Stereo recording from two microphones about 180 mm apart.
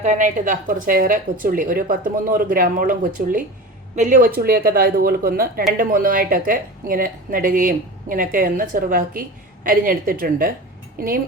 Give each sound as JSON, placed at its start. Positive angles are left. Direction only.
{"t": 0.0, "sound": "speech", "side_deg": -45}